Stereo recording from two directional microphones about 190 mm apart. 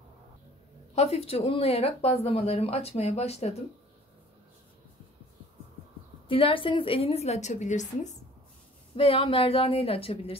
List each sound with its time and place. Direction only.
0.9 s speech: 35° left (ahead or behind)
6.2 s a woman's voice: 25° left (ahead or behind)